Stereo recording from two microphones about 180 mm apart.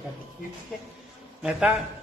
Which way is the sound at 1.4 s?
5° right (ahead or behind).